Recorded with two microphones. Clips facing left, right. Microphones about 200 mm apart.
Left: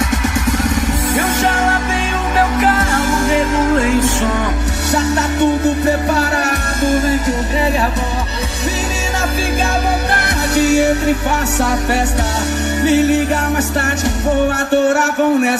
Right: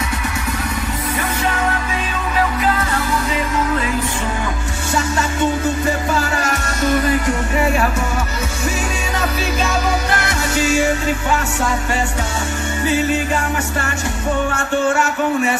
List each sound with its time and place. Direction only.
1.4 s music: 80° left
3.8 s music: 75° left (ahead or behind)
6.1 s music: 65° left (ahead or behind)
7.0 s music: 45° left (ahead or behind)
10.5 s music: 65° left (ahead or behind)
12.8 s music: 70° left (ahead or behind)